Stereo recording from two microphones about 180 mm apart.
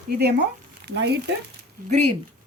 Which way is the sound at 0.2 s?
65° right (ahead or behind).